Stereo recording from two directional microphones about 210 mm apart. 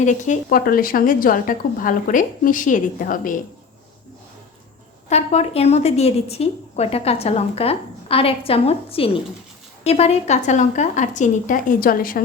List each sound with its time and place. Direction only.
0.0 s a woman's voice: 35° left (ahead or behind)
5.0 s a woman's voice: 30° left (ahead or behind)